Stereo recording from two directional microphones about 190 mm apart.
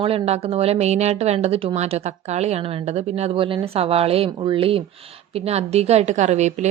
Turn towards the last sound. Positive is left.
turn(degrees=-35)  # may be behind; listen again after turning